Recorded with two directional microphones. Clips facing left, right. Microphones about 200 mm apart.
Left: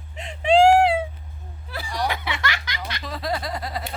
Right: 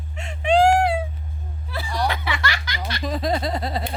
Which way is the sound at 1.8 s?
15° left (ahead or behind).